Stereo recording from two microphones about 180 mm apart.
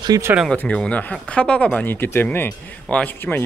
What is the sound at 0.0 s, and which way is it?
Speech, 20° right (ahead or behind).